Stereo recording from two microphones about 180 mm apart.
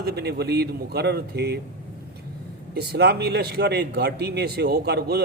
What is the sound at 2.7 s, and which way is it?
Speech, 65° right (ahead or behind).